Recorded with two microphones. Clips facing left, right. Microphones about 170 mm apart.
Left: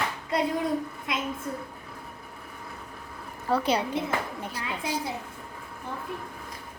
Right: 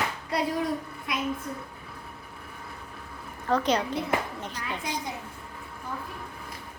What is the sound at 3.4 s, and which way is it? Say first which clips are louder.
A child's voice: even; 10° left (ahead or behind).